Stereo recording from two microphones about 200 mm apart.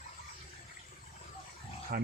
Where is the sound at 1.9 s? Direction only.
50° right (ahead or behind).